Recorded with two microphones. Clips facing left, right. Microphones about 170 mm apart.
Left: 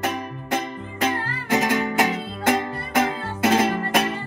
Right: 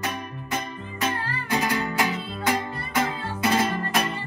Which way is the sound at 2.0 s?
85° left.